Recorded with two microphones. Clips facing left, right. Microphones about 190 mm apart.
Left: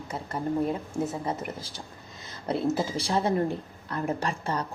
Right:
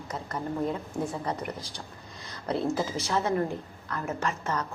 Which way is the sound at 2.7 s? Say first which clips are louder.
Left 1 dB; 30° left (ahead or behind).